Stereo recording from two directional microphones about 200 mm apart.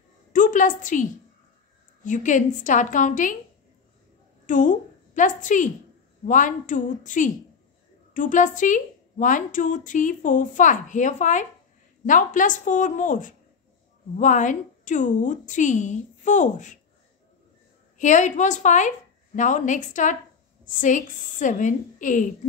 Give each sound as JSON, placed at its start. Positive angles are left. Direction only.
{"t": 0.3, "sound": "a woman's voice", "side_deg": 40}
{"t": 4.5, "sound": "a woman's voice", "side_deg": 40}
{"t": 17.9, "sound": "a woman's voice", "side_deg": 40}